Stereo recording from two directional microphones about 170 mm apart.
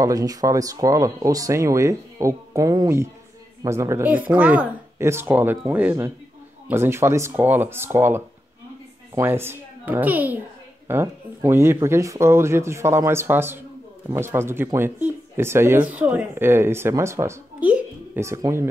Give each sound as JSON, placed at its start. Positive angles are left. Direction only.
{"t": 0.0, "sound": "speech", "side_deg": -20}